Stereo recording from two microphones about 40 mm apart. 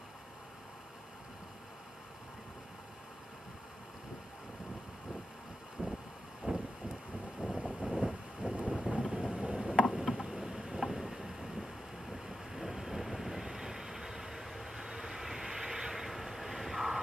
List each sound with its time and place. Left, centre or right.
5.8 s vehicle: right
7.5 s vehicle: centre
9.3 s a sound: centre
9.9 s boat: centre